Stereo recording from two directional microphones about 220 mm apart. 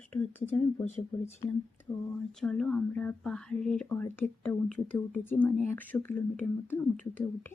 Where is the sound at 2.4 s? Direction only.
5° left (ahead or behind).